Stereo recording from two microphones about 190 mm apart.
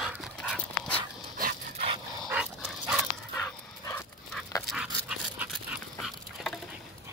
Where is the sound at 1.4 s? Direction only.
45° right (ahead or behind).